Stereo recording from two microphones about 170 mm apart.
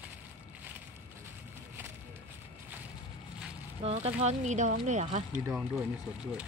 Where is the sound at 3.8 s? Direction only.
40° right (ahead or behind).